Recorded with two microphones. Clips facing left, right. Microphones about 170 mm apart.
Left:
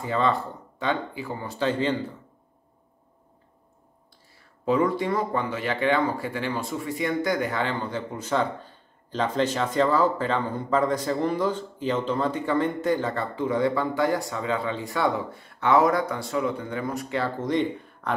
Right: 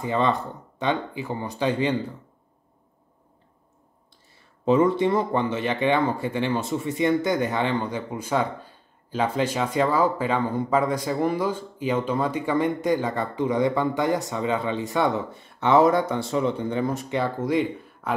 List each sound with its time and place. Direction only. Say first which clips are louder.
0.0 s speech: right 1 dB; 20° right (ahead or behind)
4.6 s speech: right 4 dB; 25° right (ahead or behind); by 18.1 s 10° right (ahead or behind)